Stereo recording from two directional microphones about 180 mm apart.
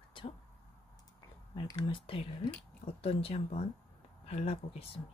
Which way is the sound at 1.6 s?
25° left (ahead or behind).